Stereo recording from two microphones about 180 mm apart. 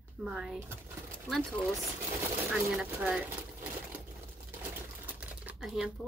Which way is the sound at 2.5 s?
5° right (ahead or behind).